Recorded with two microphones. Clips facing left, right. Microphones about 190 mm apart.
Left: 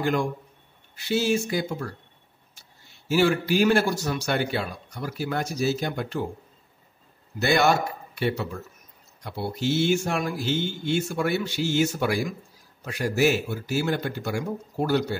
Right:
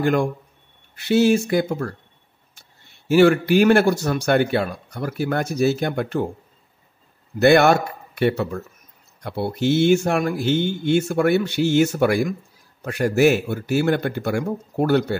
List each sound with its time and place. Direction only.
0.0 s speech: 55° right (ahead or behind)
3.1 s speech: 60° right (ahead or behind)
7.3 s speech: 60° right (ahead or behind)